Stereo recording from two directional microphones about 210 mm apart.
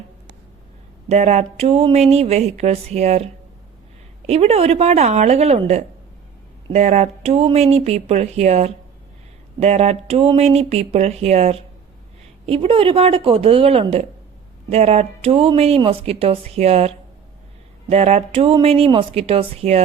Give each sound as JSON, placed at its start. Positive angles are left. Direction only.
{"t": 1.0, "sound": "speech", "side_deg": -35}
{"t": 4.3, "sound": "speech", "side_deg": -30}